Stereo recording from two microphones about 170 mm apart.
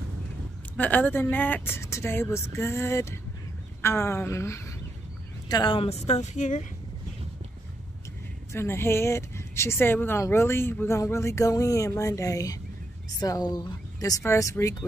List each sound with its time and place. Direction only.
0.7 s speech: 10° left (ahead or behind)
5.5 s speech: 30° left (ahead or behind); by 6.6 s 45° left (ahead or behind)
8.5 s speech: 15° left (ahead or behind)